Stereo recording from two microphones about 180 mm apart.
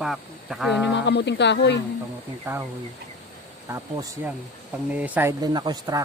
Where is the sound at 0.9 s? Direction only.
80° left.